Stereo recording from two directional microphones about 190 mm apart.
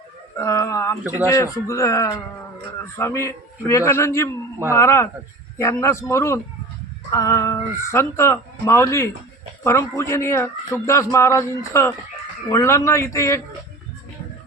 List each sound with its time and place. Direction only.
0.3 s a man's voice: 15° left (ahead or behind)